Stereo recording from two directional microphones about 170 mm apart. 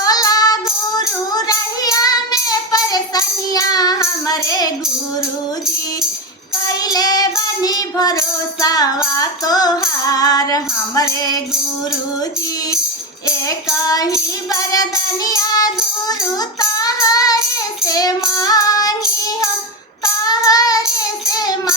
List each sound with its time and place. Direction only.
0.0 s music: 20° left (ahead or behind)
6.7 s child singing: 20° left (ahead or behind)
8.6 s music: 20° left (ahead or behind)
13.8 s music: 20° left (ahead or behind)
20.1 s child singing: 20° left (ahead or behind)
21.2 s music: 20° left (ahead or behind)